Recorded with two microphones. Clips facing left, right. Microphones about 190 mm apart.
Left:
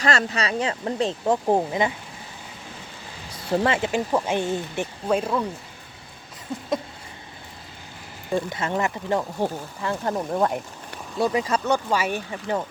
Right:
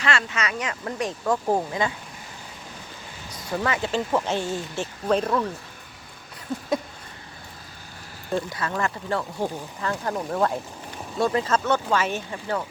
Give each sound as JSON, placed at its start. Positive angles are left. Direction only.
{"t": 0.0, "sound": "speech", "side_deg": 40}
{"t": 3.5, "sound": "speech", "side_deg": 30}
{"t": 3.8, "sound": "speech", "side_deg": 15}
{"t": 8.4, "sound": "speech", "side_deg": 25}